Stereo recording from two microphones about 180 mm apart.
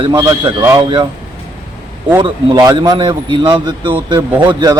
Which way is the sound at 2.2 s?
25° right (ahead or behind).